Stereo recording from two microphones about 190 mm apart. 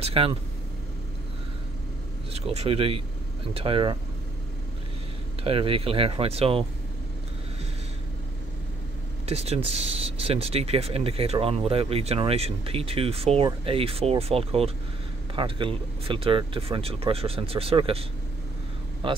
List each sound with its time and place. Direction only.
0.0 s speech: 30° right (ahead or behind)
2.3 s speech: 35° right (ahead or behind)
5.4 s speech: 30° right (ahead or behind)
9.2 s speech: 35° right (ahead or behind)
19.0 s speech: 25° right (ahead or behind)